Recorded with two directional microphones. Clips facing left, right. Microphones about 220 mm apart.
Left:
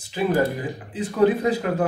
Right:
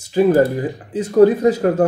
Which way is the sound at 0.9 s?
45° right (ahead or behind).